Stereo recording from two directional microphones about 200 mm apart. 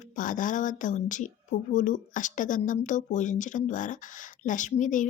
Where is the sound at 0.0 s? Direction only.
40° left (ahead or behind).